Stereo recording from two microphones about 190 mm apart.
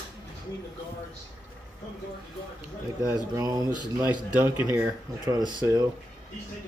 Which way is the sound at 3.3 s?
20° right (ahead or behind).